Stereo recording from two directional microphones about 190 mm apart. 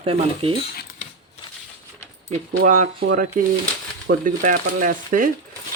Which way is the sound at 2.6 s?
40° right (ahead or behind).